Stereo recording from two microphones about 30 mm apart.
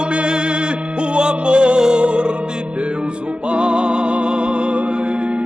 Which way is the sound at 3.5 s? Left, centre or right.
Right.